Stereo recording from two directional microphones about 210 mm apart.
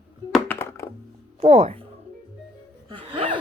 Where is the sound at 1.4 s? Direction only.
25° right (ahead or behind).